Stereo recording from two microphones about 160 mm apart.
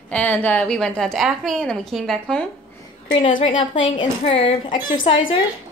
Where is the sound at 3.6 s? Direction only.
30° left (ahead or behind).